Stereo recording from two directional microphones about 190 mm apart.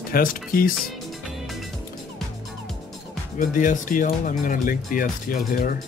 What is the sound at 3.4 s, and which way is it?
Speech, 45° left (ahead or behind).